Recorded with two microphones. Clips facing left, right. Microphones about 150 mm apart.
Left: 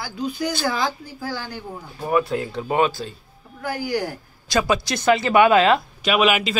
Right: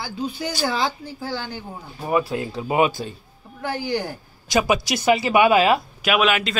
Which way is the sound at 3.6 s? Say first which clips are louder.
Even; 25° right (ahead or behind).